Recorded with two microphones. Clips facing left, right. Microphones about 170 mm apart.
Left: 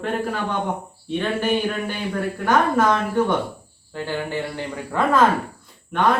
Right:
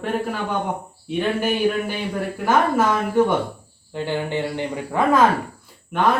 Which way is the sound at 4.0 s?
20° right (ahead or behind).